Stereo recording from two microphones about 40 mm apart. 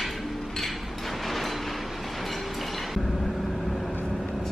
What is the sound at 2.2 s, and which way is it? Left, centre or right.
Train, centre.